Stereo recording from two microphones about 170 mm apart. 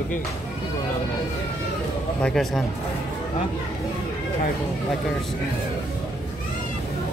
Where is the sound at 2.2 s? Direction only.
Centre (ahead or behind).